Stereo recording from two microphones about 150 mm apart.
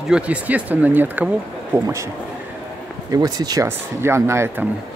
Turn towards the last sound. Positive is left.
turn(degrees=-15)  # may be behind; listen again after turning